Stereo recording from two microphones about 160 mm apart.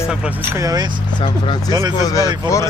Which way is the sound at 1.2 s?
30° left (ahead or behind).